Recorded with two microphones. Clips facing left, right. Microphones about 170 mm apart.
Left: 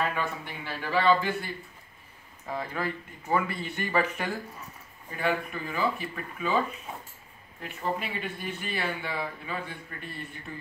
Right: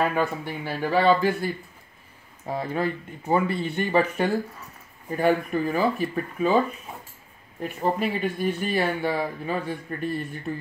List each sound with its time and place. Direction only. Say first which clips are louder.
0.1 s speech: right 7 dB; 40° right (ahead or behind)
5.1 s speech: right 8 dB; 40° right (ahead or behind)
7.6 s speech: right 7 dB; 40° right (ahead or behind)